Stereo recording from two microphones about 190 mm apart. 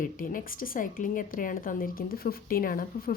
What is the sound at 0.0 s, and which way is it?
A woman's voice, 45° left (ahead or behind).